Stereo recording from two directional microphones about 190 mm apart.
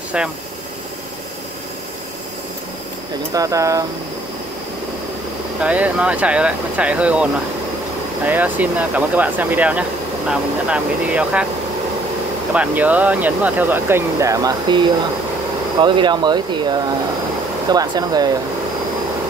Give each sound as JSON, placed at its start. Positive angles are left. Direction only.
{"t": 3.3, "sound": "speech", "side_deg": -15}
{"t": 5.6, "sound": "speech", "side_deg": -5}
{"t": 8.3, "sound": "speech", "side_deg": -10}
{"t": 12.5, "sound": "speech", "side_deg": -10}